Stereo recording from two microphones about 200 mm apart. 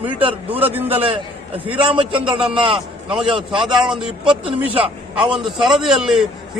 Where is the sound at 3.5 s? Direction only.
5° right (ahead or behind).